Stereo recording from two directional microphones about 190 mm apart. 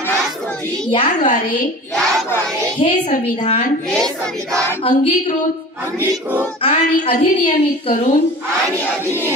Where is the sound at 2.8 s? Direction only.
30° left (ahead or behind).